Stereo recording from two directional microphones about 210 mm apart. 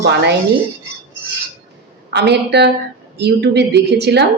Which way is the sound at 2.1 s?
55° right (ahead or behind).